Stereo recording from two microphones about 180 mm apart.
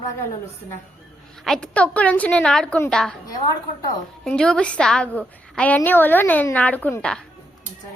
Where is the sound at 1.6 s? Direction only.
5° left (ahead or behind).